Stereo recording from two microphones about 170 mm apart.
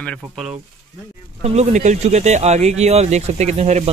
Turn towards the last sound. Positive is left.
turn(degrees=-40)  # may be behind; listen again after turning